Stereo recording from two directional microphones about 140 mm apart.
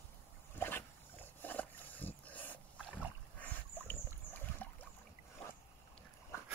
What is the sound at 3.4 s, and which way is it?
Boat, 10° left (ahead or behind).